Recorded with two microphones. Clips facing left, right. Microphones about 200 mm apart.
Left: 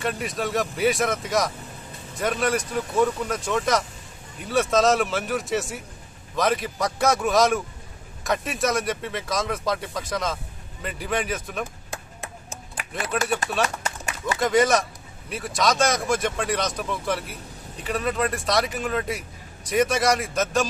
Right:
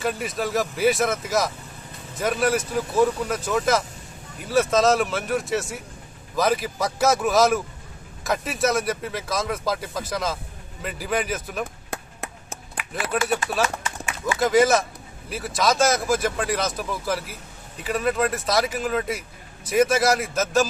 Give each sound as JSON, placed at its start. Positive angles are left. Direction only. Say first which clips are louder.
{"t": 0.0, "sound": "speech", "louder": "right 1 dB", "side_deg": 0}
{"t": 11.9, "sound": "chop", "louder": "right 2 dB", "side_deg": -60}
{"t": 13.1, "sound": "speech", "louder": "right 1 dB", "side_deg": 0}
{"t": 14.4, "sound": "speech", "louder": "right 2 dB", "side_deg": 0}